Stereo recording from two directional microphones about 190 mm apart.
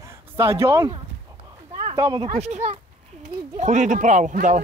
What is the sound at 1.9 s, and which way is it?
Speech, 20° right (ahead or behind).